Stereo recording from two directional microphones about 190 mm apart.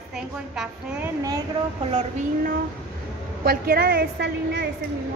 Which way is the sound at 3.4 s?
55° right (ahead or behind).